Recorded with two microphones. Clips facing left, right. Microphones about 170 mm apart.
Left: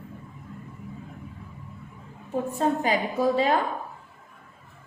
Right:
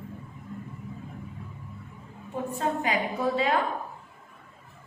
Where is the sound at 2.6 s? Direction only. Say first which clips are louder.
Left 3 dB; 35° left (ahead or behind).